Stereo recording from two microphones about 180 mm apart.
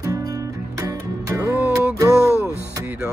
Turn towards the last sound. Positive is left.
turn(degrees=-10)  # may be behind; listen again after turning